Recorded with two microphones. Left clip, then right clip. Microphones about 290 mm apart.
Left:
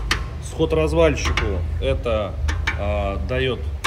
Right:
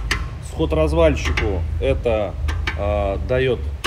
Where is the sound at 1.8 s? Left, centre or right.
Right.